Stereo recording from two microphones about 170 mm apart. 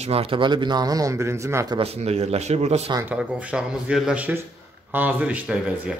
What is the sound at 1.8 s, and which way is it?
Speech, 35° right (ahead or behind).